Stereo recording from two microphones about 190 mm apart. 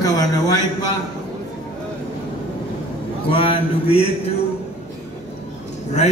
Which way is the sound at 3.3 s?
30° left (ahead or behind).